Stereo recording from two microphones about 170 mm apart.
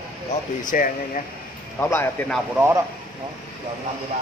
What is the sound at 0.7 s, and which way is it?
Speech, 50° left (ahead or behind).